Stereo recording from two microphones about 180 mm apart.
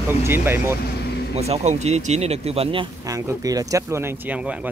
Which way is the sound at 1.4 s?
35° right (ahead or behind).